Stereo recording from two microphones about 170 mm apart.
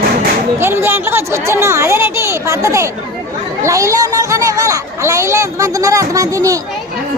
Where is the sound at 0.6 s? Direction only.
15° right (ahead or behind).